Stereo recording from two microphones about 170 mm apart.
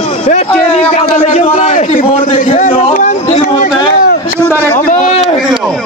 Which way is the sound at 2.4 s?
50° left (ahead or behind).